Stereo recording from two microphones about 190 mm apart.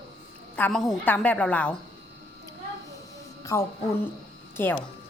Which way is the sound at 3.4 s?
15° left (ahead or behind).